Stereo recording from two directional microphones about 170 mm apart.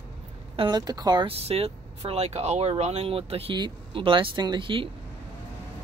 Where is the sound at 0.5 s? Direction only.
25° right (ahead or behind).